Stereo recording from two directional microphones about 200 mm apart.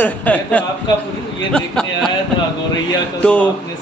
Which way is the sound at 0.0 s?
5° left (ahead or behind).